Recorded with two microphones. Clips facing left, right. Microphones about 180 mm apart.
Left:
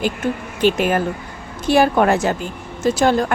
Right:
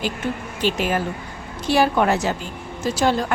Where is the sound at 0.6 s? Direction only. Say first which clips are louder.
Left 5 dB; 55° left (ahead or behind).